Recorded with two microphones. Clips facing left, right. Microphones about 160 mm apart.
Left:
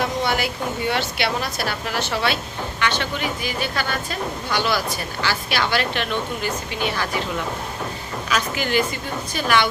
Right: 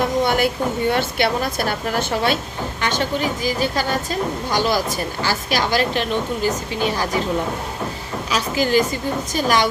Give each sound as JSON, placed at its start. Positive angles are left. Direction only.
{"t": 0.2, "sound": "a woman's voice", "side_deg": -50}
{"t": 8.3, "sound": "a woman's voice", "side_deg": -35}